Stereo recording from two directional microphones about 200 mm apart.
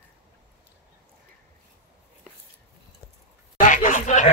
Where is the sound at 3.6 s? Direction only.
40° left (ahead or behind).